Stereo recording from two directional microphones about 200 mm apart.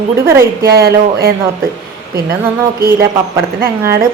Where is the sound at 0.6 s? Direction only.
50° right (ahead or behind).